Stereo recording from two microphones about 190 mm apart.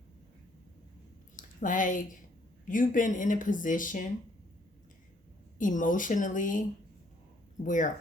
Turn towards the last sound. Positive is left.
turn(degrees=45)  # may be behind; listen again after turning